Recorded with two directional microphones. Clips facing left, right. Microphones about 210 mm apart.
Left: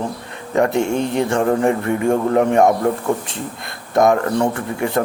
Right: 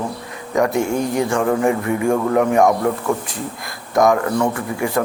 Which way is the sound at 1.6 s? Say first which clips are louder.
Left 1 dB; 15° right (ahead or behind).